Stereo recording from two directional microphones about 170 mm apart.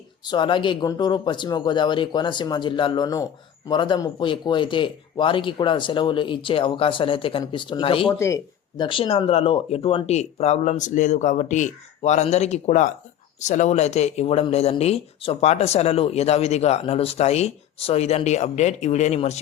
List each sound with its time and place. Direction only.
0.3 s speech: 30° left (ahead or behind)
8.1 s speech: 15° left (ahead or behind)
8.8 s speech: 30° left (ahead or behind)